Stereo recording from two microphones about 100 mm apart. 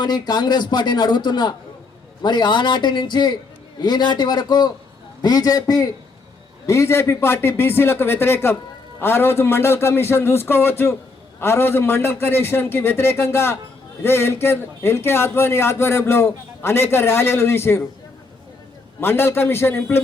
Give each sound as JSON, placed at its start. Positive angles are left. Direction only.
{"t": 0.0, "sound": "a man's voice", "side_deg": 45}
{"t": 6.7, "sound": "a man's voice", "side_deg": 30}
{"t": 18.9, "sound": "a man's voice", "side_deg": 25}